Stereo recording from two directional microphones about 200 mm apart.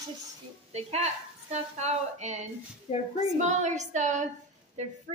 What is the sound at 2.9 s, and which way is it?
Speech, 35° left (ahead or behind).